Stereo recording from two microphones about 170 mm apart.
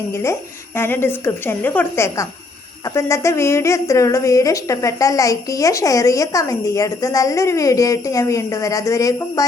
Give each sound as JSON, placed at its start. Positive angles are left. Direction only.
{"t": 0.8, "sound": "a woman's voice", "side_deg": 15}